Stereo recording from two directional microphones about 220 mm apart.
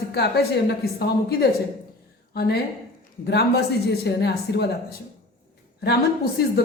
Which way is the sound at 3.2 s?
45° left (ahead or behind).